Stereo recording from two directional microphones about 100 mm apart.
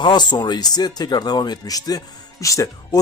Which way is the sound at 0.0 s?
45° left (ahead or behind).